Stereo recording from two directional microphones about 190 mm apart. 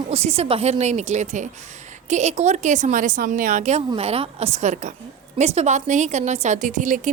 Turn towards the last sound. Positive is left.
turn(degrees=-40)  # may be behind; listen again after turning